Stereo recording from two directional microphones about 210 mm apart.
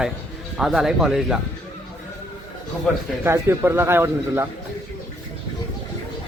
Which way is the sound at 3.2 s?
10° right (ahead or behind).